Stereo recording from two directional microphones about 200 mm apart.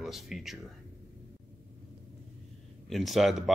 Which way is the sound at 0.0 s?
Centre (ahead or behind).